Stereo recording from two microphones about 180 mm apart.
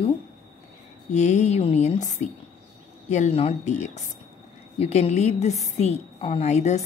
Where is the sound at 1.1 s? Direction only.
40° left (ahead or behind).